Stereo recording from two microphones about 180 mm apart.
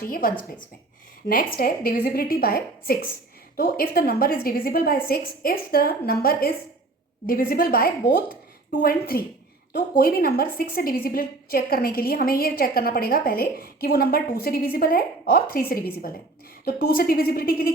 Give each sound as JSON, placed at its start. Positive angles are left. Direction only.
{"t": 0.0, "sound": "a woman's voice", "side_deg": 55}